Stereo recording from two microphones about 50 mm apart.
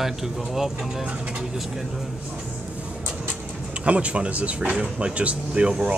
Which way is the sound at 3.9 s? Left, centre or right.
Right.